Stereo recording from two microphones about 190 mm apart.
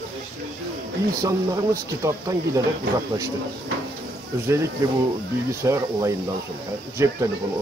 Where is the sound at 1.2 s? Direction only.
15° right (ahead or behind).